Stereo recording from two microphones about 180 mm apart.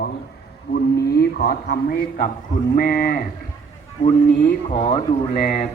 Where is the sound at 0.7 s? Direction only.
60° left (ahead or behind).